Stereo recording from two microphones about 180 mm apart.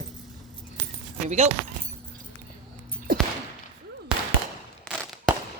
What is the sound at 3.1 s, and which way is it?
Whip, 55° right (ahead or behind).